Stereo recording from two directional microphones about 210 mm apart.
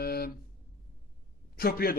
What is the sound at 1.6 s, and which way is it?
Speech, 45° left (ahead or behind).